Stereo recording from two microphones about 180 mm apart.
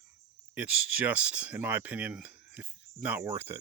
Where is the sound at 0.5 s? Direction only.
5° right (ahead or behind).